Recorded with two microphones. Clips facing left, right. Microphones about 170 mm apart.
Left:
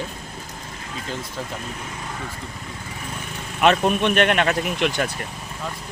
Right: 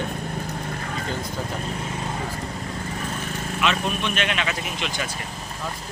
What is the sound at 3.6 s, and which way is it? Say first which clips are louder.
Speech: left 8 dB; 55° left (ahead or behind).